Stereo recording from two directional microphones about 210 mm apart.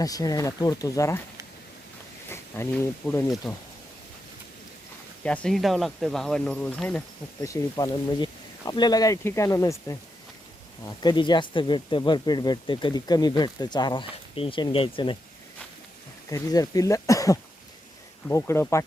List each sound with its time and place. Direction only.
0.0 s speech: 15° left (ahead or behind)
2.3 s speech: 10° left (ahead or behind)
5.2 s speech: 5° left (ahead or behind); by 15.2 s 25° left (ahead or behind)
16.3 s speech: 15° left (ahead or behind)